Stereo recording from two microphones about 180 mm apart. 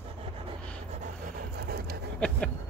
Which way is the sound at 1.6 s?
60° right (ahead or behind).